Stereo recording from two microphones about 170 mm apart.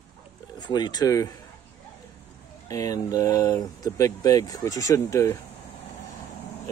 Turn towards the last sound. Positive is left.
turn(degrees=15)  # may be behind; listen again after turning